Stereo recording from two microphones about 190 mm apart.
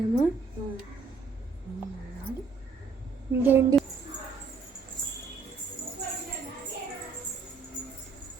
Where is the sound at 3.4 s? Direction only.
10° right (ahead or behind).